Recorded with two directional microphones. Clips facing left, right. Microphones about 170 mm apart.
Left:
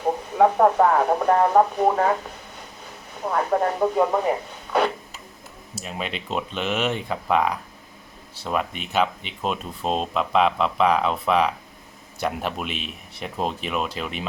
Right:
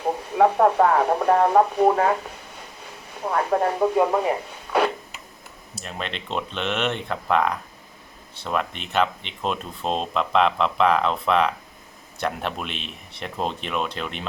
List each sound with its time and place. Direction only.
0.3 s speech: centre (ahead or behind)
3.2 s speech: centre (ahead or behind)
5.7 s speech: 5° left (ahead or behind)